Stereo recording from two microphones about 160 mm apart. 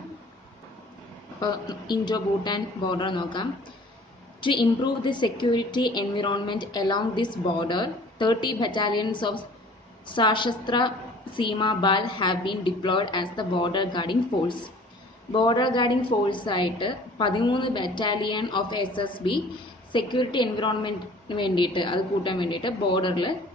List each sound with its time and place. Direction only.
1.4 s a woman's voice: 25° left (ahead or behind)